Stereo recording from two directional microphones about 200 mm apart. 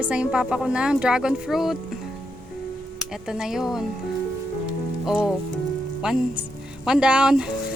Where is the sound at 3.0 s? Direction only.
5° right (ahead or behind).